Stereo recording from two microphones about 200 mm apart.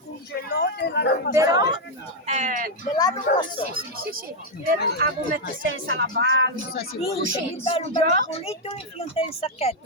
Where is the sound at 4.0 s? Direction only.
45° right (ahead or behind).